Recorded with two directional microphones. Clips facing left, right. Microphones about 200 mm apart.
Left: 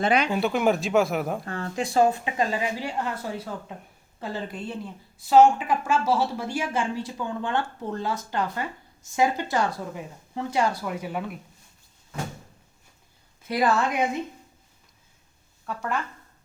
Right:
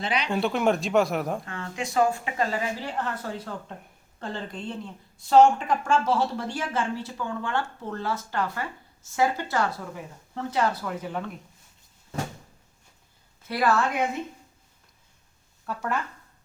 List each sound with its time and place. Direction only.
0.0 s speech: 50° left (ahead or behind)
0.3 s speech: 5° left (ahead or behind)
1.5 s speech: 40° left (ahead or behind); by 11.3 s 10° left (ahead or behind)
13.5 s speech: 15° left (ahead or behind)
15.6 s speech: centre (ahead or behind)